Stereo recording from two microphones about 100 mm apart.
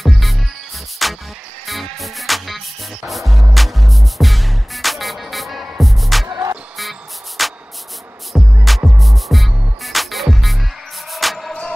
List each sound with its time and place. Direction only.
0.0 s music: centre (ahead or behind)
6.2 s music: 30° right (ahead or behind)
6.8 s music: centre (ahead or behind)
8.6 s music: centre (ahead or behind)